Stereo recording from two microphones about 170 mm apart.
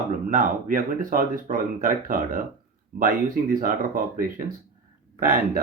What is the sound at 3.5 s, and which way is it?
Speech, 55° right (ahead or behind).